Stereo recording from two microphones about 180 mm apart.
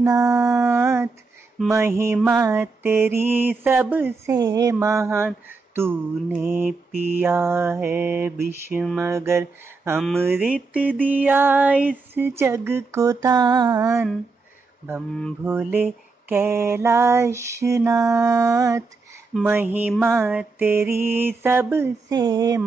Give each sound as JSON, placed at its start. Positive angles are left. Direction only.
{"t": 0.0, "sound": "female singing", "side_deg": -20}
{"t": 1.7, "sound": "mantra", "side_deg": -15}
{"t": 4.4, "sound": "mantra", "side_deg": -20}
{"t": 15.4, "sound": "mantra", "side_deg": -10}